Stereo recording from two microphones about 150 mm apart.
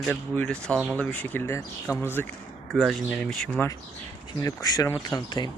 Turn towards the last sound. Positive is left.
turn(degrees=25)  # may be behind; listen again after turning